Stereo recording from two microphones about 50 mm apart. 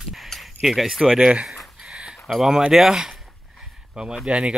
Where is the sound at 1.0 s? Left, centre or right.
Centre.